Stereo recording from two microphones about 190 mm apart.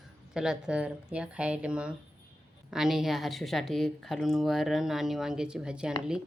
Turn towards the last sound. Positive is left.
turn(degrees=-5)  # may be behind; listen again after turning